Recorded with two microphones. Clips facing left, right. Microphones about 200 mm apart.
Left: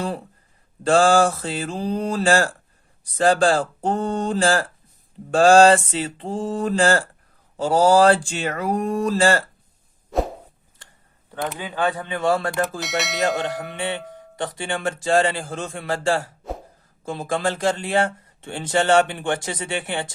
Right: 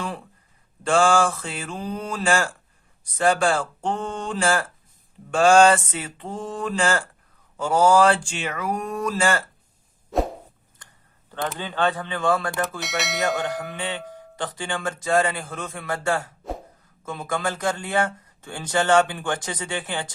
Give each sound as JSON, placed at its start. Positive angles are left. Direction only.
{"t": 0.0, "sound": "a sound", "side_deg": 35}
{"t": 0.9, "sound": "speech", "side_deg": 35}
{"t": 11.3, "sound": "speech", "side_deg": 5}
{"t": 12.8, "sound": "speech", "side_deg": 0}
{"t": 13.4, "sound": "speech", "side_deg": 20}